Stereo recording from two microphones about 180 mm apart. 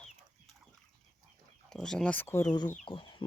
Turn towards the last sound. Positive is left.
turn(degrees=25)  # may be behind; listen again after turning